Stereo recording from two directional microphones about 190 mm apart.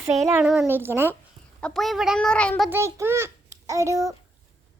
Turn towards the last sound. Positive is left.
turn(degrees=-15)  # may be behind; listen again after turning